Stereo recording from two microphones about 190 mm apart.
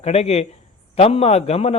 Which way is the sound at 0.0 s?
35° left (ahead or behind).